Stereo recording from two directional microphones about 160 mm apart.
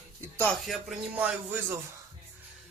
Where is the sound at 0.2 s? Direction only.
10° left (ahead or behind).